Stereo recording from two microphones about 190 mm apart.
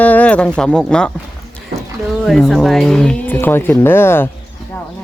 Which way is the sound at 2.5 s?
Centre (ahead or behind).